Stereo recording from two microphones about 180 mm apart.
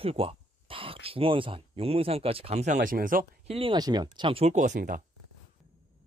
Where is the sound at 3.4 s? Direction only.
30° right (ahead or behind); by 5.0 s 45° right (ahead or behind).